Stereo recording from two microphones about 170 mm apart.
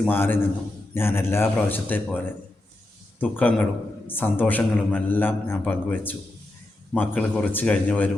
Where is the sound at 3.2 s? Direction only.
10° left (ahead or behind).